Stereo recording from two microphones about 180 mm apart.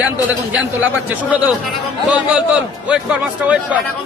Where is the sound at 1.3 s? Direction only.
5° right (ahead or behind).